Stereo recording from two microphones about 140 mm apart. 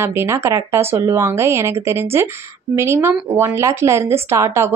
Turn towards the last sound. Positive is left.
turn(degrees=-20)  # may be behind; listen again after turning